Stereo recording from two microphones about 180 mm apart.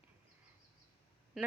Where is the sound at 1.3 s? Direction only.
Centre (ahead or behind).